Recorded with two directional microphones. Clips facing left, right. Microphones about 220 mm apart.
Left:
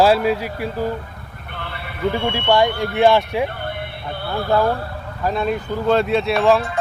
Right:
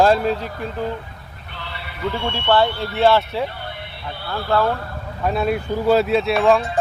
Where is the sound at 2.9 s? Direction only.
15° left (ahead or behind).